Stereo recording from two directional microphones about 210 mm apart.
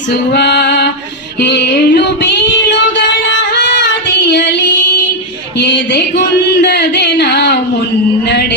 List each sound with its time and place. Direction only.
0.1 s female singing: 55° left (ahead or behind)
5.5 s a sound: 55° left (ahead or behind)
8.3 s music: 55° left (ahead or behind)